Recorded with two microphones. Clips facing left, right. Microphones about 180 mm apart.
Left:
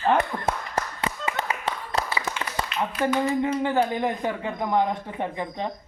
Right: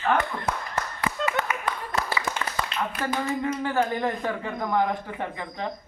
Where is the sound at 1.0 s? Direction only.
25° left (ahead or behind).